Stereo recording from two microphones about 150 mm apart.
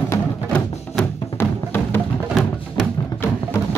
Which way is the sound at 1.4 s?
15° left (ahead or behind).